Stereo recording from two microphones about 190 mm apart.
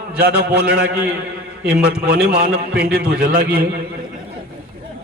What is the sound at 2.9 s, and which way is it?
Speech, 55° right (ahead or behind).